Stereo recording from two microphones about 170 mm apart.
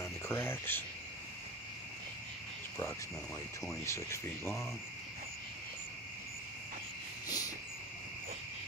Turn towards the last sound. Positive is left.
turn(degrees=20)  # may be behind; listen again after turning